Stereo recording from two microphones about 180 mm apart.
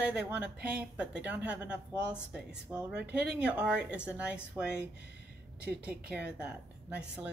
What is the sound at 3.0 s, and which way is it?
Speech, 70° right (ahead or behind).